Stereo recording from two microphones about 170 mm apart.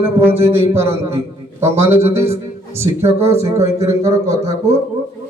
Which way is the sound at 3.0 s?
35° right (ahead or behind).